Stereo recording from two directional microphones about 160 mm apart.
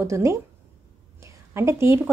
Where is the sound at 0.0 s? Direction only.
20° right (ahead or behind).